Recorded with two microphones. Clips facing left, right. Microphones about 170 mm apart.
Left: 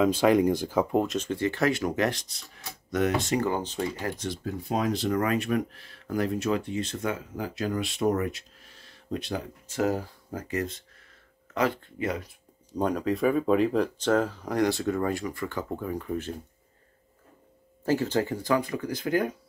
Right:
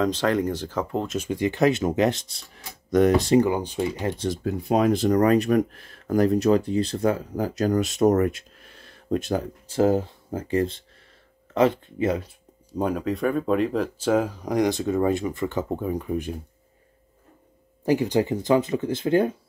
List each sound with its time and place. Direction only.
0.0 s speech: 10° left (ahead or behind)
1.0 s speech: 10° right (ahead or behind); by 2.4 s 25° right (ahead or behind)
2.9 s speech: 35° right (ahead or behind)
3.3 s speech: 10° right (ahead or behind)
4.6 s speech: 60° right (ahead or behind)
9.7 s speech: 30° right (ahead or behind)
12.7 s speech: 5° right (ahead or behind)
17.8 s speech: 15° right (ahead or behind)